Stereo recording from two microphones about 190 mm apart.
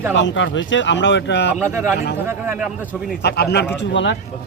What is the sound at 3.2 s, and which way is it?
Speech, 60° left (ahead or behind).